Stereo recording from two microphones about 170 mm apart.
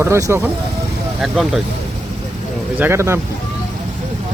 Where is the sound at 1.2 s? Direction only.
Centre (ahead or behind).